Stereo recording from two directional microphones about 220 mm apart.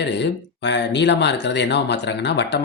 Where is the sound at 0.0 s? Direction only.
50° left (ahead or behind).